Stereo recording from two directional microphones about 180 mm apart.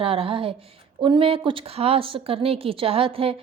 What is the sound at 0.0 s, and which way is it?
A woman's voice, 30° right (ahead or behind).